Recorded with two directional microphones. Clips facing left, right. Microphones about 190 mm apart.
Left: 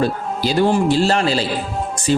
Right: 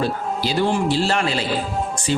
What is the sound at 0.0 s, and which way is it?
Speech, 45° left (ahead or behind).